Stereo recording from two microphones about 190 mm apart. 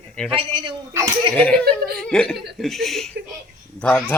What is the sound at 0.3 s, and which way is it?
Speech, 25° right (ahead or behind).